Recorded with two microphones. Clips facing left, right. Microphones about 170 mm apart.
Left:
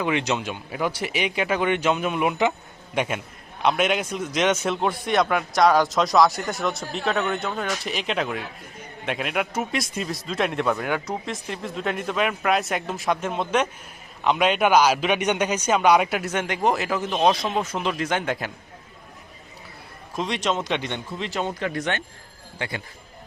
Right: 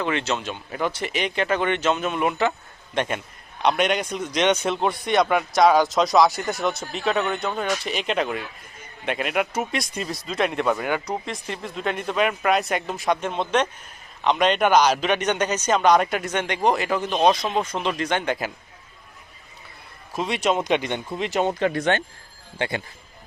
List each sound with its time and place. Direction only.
0.0 s a man's voice: 15° left (ahead or behind)
20.1 s a man's voice: 5° right (ahead or behind); by 22.8 s 25° right (ahead or behind)